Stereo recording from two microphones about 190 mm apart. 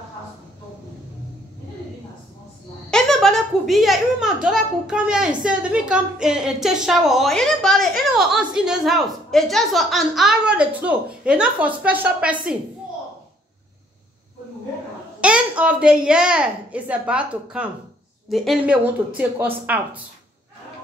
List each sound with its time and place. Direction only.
2.9 s speech: centre (ahead or behind)
15.1 s a child's voice: 5° right (ahead or behind)